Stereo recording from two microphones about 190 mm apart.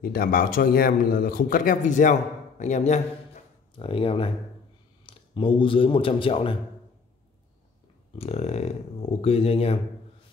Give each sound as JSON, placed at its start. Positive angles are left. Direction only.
{"t": 0.0, "sound": "a man's voice", "side_deg": 50}
{"t": 8.2, "sound": "speech", "side_deg": 35}